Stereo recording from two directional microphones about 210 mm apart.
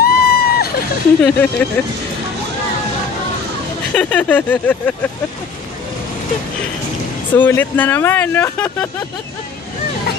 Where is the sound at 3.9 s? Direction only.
5° left (ahead or behind).